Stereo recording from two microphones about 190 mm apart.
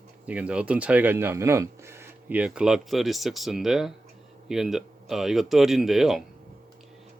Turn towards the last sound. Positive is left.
turn(degrees=0)  # may be behind; listen again after turning